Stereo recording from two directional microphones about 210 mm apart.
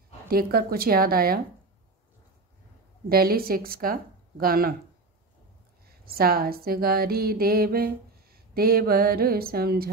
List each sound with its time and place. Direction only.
0.3 s speech: 45° right (ahead or behind)
3.1 s speech: 45° right (ahead or behind)
5.9 s speech: 45° right (ahead or behind)